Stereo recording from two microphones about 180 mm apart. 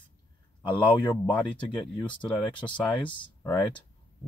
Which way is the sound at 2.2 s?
25° left (ahead or behind).